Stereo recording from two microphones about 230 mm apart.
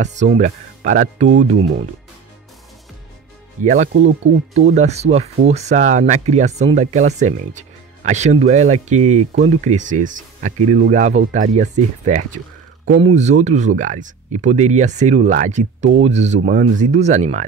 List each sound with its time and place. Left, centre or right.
0.0 s speech: right
3.6 s speech: right